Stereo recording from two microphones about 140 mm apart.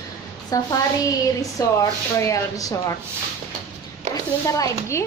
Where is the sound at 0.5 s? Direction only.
25° left (ahead or behind).